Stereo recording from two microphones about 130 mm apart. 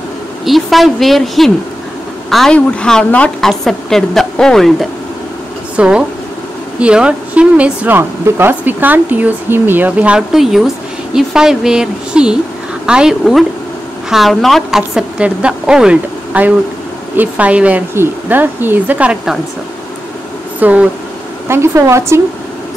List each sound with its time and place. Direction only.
0.5 s a woman's voice: centre (ahead or behind)
5.8 s a woman's voice: 10° right (ahead or behind)
20.5 s speech: 10° right (ahead or behind)